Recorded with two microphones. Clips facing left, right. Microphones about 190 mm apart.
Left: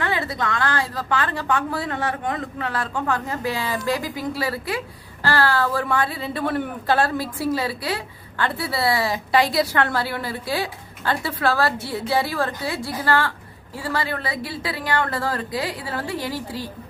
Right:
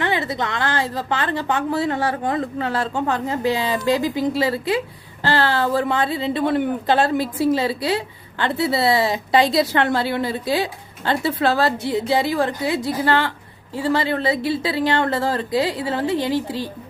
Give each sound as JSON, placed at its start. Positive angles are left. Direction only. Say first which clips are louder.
{"t": 0.0, "sound": "a woman's voice", "louder": "right 2 dB", "side_deg": -20}